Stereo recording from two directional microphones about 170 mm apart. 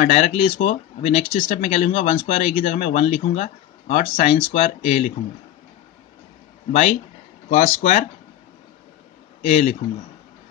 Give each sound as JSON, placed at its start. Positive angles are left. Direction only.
{"t": 0.0, "sound": "speech", "side_deg": 45}
{"t": 7.4, "sound": "speech", "side_deg": 45}
{"t": 9.4, "sound": "speech", "side_deg": 45}